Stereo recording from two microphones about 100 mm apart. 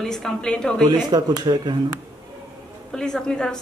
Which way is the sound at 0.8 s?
45° right (ahead or behind).